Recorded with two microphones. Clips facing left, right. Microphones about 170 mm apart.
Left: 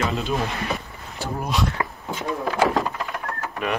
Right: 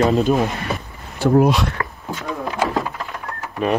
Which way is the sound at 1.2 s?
70° right (ahead or behind).